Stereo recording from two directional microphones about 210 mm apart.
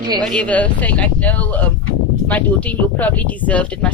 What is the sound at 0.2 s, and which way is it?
Speech, 5° left (ahead or behind).